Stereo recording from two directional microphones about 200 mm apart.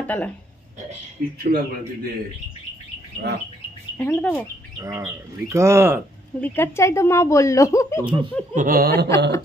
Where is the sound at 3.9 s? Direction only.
10° left (ahead or behind).